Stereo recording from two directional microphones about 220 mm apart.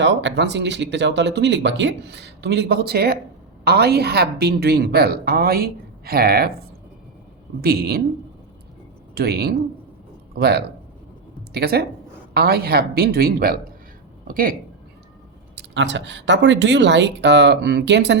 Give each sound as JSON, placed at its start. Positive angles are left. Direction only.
{"t": 0.0, "sound": "speech", "side_deg": -55}
{"t": 7.6, "sound": "speech", "side_deg": -45}
{"t": 9.1, "sound": "speech", "side_deg": -45}
{"t": 15.5, "sound": "speech", "side_deg": -55}